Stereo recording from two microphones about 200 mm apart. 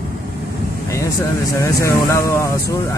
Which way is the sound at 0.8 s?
15° left (ahead or behind).